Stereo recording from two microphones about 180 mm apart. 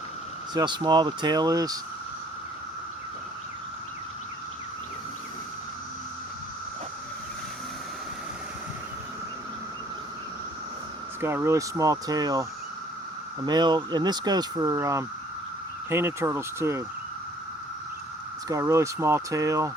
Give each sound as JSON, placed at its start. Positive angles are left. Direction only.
{"t": 0.5, "sound": "speech", "side_deg": -25}
{"t": 11.2, "sound": "speech", "side_deg": -15}
{"t": 18.4, "sound": "speech", "side_deg": -15}